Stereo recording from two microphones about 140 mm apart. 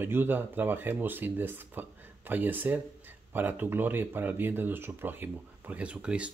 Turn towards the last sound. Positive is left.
turn(degrees=-10)  # may be behind; listen again after turning